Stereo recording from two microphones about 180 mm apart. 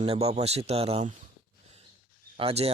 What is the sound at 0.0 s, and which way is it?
Speech, 35° right (ahead or behind).